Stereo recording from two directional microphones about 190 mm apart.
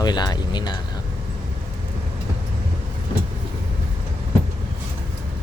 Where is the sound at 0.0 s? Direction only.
20° left (ahead or behind).